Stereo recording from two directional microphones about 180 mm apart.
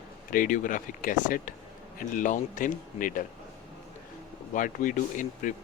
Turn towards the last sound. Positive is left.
turn(degrees=45)  # may be behind; listen again after turning